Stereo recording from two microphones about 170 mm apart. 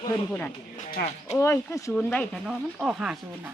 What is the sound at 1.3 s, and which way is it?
Speech, 15° left (ahead or behind).